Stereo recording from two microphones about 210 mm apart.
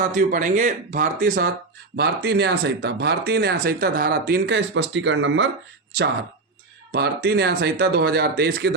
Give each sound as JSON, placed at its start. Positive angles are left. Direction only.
{"t": 0.0, "sound": "speech", "side_deg": -40}
{"t": 6.9, "sound": "speech", "side_deg": -50}